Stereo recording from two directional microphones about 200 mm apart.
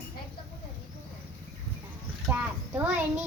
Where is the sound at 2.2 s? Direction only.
10° right (ahead or behind).